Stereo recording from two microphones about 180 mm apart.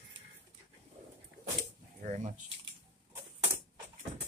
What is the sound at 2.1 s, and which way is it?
Typing, 40° right (ahead or behind).